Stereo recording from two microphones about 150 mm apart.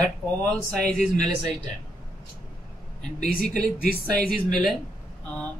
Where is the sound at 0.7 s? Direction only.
5° left (ahead or behind).